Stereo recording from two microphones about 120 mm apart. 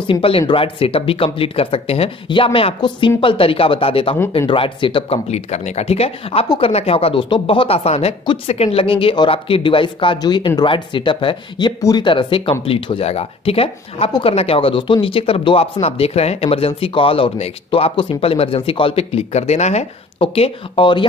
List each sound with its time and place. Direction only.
0.0 s speech: 50° left (ahead or behind)
5.3 s speech: 65° left (ahead or behind)
20.2 s speech: 50° left (ahead or behind)